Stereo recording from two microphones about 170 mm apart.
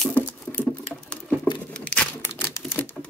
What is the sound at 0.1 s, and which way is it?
Patter, 10° left (ahead or behind).